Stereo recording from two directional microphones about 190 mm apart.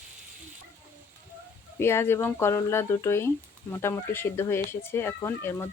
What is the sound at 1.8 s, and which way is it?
Speech, 15° left (ahead or behind).